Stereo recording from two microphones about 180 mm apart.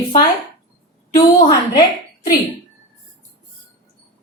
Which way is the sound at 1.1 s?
25° left (ahead or behind).